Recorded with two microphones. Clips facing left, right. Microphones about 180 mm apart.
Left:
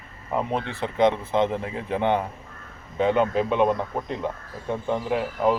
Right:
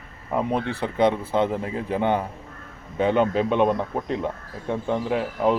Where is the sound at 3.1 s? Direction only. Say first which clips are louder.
Right 3 dB; 5° left (ahead or behind).